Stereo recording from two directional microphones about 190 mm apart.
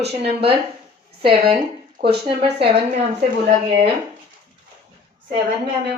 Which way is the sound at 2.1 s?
30° right (ahead or behind).